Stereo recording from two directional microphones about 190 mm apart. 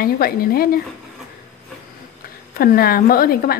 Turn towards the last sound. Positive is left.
turn(degrees=50)  # may be behind; listen again after turning